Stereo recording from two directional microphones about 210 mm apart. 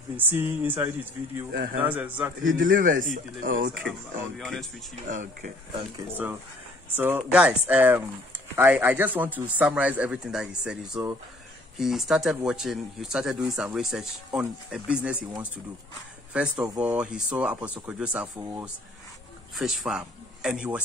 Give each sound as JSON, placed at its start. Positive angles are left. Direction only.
{"t": 0.3, "sound": "speech", "side_deg": -10}
{"t": 1.5, "sound": "a man's voice", "side_deg": -45}
{"t": 1.8, "sound": "speech", "side_deg": -10}
{"t": 2.4, "sound": "speech", "side_deg": -40}
{"t": 4.4, "sound": "speech", "side_deg": 0}
{"t": 5.0, "sound": "speech", "side_deg": -35}
{"t": 7.0, "sound": "speech", "side_deg": -10}
{"t": 16.3, "sound": "speech", "side_deg": -5}